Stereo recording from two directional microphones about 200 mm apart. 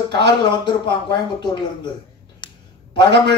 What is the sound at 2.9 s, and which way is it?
Speech, 55° right (ahead or behind).